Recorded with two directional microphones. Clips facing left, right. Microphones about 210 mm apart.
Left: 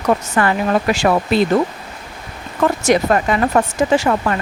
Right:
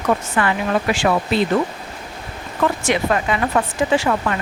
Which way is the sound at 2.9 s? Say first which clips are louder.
Left 4 dB; 40° left (ahead or behind).